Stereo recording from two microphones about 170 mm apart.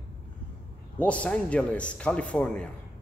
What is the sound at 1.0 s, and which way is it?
Speech, 5° left (ahead or behind).